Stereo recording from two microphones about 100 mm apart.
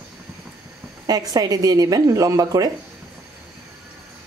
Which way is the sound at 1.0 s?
40° right (ahead or behind).